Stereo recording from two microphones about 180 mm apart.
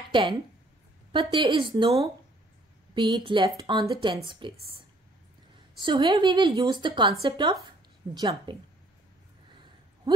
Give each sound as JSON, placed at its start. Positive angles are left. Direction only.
{"t": 0.1, "sound": "a woman's voice", "side_deg": -30}
{"t": 5.8, "sound": "a woman's voice", "side_deg": -25}